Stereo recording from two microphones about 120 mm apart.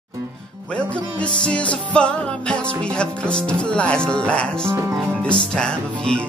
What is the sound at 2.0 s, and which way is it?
Music, 10° left (ahead or behind).